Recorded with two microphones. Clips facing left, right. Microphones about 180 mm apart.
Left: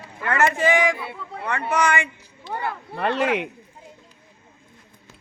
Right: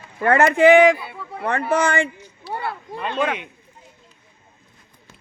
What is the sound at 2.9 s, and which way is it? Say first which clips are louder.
Speech: left 2 dB; 75° left (ahead or behind).